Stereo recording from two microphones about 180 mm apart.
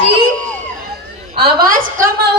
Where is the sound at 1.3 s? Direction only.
60° right (ahead or behind).